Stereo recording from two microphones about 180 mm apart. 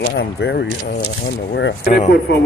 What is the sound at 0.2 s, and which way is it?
Speech, 70° left (ahead or behind).